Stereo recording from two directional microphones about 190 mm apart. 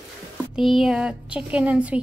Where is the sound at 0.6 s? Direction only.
Centre (ahead or behind).